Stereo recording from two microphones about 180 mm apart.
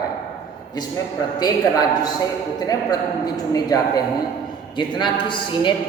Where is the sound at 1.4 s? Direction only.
20° left (ahead or behind).